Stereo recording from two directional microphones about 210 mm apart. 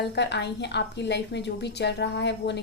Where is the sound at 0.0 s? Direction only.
55° left (ahead or behind).